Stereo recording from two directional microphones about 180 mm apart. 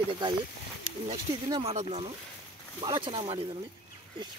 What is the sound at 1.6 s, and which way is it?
Speech, 35° right (ahead or behind).